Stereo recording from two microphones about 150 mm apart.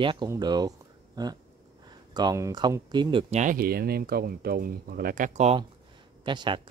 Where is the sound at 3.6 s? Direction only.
90° right; by 5.5 s 55° right (ahead or behind).